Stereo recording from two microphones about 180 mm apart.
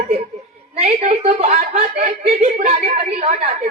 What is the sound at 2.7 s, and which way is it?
A woman's voice, 35° right (ahead or behind).